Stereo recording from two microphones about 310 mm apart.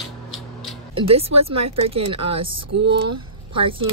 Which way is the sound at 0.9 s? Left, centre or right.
Centre.